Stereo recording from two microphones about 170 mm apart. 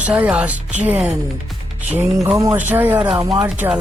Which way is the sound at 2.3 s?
20° right (ahead or behind).